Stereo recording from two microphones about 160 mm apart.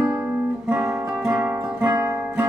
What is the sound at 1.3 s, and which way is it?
Guitar, 10° right (ahead or behind).